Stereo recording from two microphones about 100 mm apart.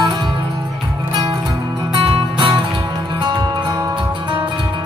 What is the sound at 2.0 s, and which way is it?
Music, 60° right (ahead or behind).